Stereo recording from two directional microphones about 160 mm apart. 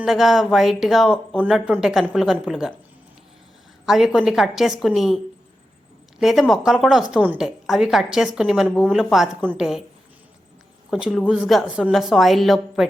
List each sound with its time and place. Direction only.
0.0 s speech: centre (ahead or behind)
3.8 s speech: 5° right (ahead or behind)
10.9 s speech: 5° right (ahead or behind)